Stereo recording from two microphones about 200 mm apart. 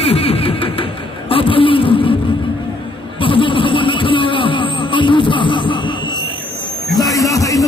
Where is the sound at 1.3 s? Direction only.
25° left (ahead or behind).